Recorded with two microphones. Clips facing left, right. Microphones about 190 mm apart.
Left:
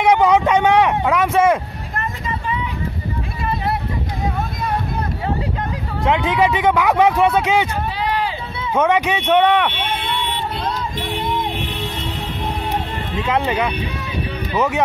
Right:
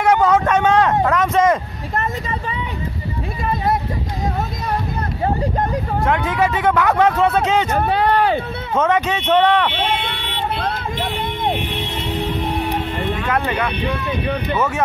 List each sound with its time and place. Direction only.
0.0 s a sound: 15° left (ahead or behind)
6.0 s speech: 20° left (ahead or behind)
7.7 s a sound: 60° right (ahead or behind)
8.7 s speech: 15° left (ahead or behind)
10.0 s vehicle: 55° right (ahead or behind)
13.3 s speech: 20° left (ahead or behind)